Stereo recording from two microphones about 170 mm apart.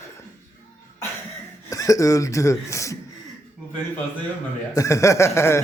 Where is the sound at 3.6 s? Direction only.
5° right (ahead or behind).